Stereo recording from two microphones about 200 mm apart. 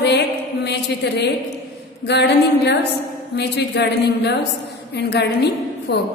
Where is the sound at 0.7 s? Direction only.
55° left (ahead or behind).